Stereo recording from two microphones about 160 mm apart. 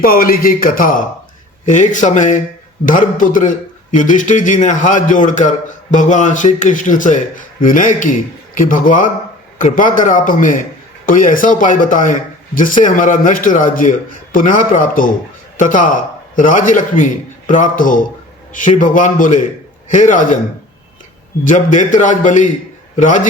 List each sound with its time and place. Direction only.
0.0 s a man's voice: 65° left (ahead or behind)
21.4 s a man's voice: 50° left (ahead or behind)